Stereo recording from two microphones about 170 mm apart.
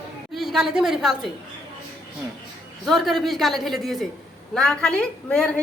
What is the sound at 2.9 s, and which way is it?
Speech, centre (ahead or behind).